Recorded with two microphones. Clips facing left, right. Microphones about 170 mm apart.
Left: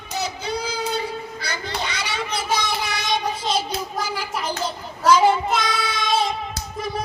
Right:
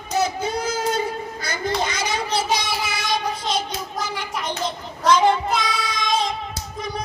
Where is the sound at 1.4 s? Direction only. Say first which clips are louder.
Right 7 dB; 45° right (ahead or behind).